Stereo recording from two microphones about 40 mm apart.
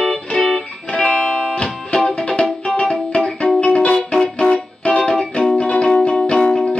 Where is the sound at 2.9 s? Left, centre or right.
Left.